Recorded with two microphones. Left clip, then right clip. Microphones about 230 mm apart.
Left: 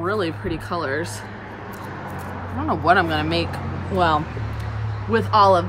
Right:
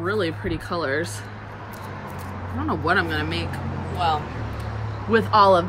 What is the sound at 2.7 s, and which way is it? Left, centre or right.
Speech, centre.